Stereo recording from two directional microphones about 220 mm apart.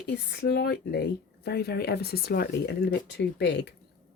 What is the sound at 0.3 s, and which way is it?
Speech, 45° left (ahead or behind).